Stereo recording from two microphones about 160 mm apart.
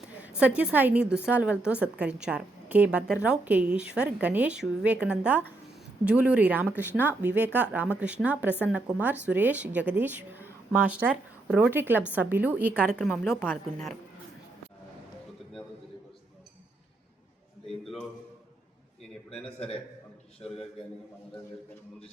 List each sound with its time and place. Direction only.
0.2 s a woman's voice: 10° right (ahead or behind)
17.7 s a sound: 5° left (ahead or behind)
19.5 s a man's voice: 40° left (ahead or behind)